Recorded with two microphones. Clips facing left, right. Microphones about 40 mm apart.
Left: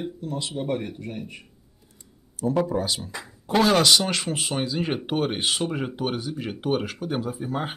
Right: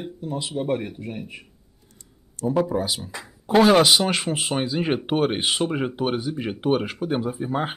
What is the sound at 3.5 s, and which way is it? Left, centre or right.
Speech, centre.